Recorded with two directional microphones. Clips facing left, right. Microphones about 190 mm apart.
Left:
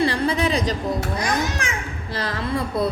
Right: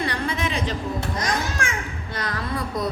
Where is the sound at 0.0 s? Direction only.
35° left (ahead or behind).